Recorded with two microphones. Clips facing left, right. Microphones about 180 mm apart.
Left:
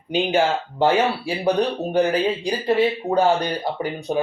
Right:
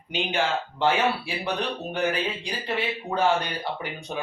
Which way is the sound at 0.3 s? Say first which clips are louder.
Left 6 dB; 35° left (ahead or behind).